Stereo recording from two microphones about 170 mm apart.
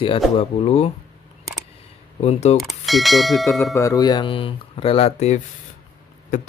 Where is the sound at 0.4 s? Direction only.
35° left (ahead or behind).